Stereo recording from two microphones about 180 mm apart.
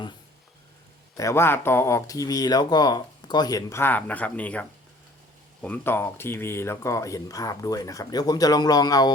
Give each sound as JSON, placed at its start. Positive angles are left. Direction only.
{"t": 1.1, "sound": "speech", "side_deg": 15}
{"t": 5.6, "sound": "speech", "side_deg": 10}